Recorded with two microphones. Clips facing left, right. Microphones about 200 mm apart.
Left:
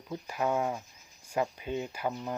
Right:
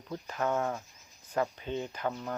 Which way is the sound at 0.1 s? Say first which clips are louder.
Left 1 dB; 10° left (ahead or behind).